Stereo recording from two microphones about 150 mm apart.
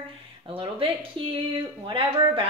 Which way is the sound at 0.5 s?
35° right (ahead or behind).